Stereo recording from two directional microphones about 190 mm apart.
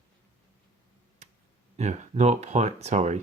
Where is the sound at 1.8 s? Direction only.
35° right (ahead or behind).